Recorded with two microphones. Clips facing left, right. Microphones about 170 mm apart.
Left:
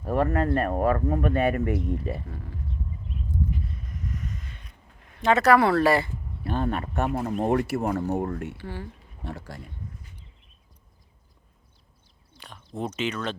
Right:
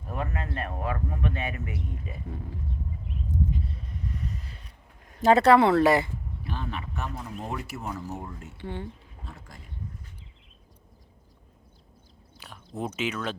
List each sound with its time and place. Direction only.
0.1 s speech: 50° left (ahead or behind); by 2.2 s 70° left (ahead or behind)
3.3 s a sound: 25° right (ahead or behind)
6.4 s speech: 50° left (ahead or behind); by 8.5 s 75° left (ahead or behind)
8.5 s speech: 20° right (ahead or behind)
9.2 s speech: 75° left (ahead or behind)
12.4 s speech: 5° right (ahead or behind)